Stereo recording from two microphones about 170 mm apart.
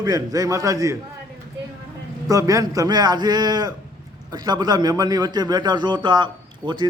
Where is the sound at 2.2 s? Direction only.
20° right (ahead or behind).